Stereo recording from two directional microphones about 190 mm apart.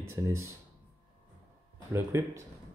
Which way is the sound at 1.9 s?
15° right (ahead or behind).